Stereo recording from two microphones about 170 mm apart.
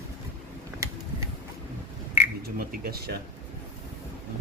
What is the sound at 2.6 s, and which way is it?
Speech, 60° right (ahead or behind).